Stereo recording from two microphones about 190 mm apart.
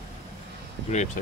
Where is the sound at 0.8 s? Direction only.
40° left (ahead or behind).